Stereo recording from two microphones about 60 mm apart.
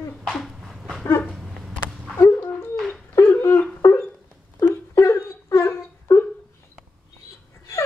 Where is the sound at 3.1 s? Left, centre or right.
Left.